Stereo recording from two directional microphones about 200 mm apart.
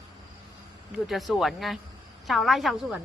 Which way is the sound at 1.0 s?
Centre (ahead or behind).